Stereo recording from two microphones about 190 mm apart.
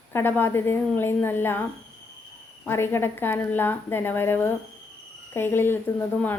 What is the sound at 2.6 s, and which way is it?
A woman's voice, 10° left (ahead or behind).